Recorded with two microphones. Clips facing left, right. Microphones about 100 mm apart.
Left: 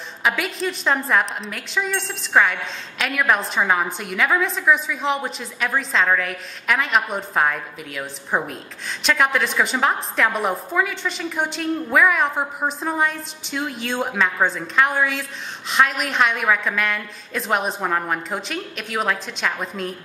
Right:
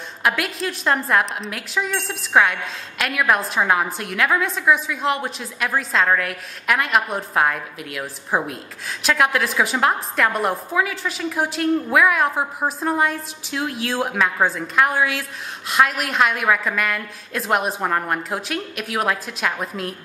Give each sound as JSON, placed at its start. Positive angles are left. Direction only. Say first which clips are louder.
{"t": 0.2, "sound": "a woman's voice", "louder": "even", "side_deg": 0}